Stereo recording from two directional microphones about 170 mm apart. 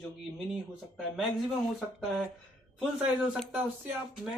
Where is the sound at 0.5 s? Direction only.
5° right (ahead or behind).